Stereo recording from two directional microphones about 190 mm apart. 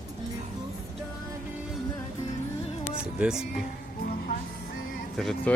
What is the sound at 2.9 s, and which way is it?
Music, 5° right (ahead or behind).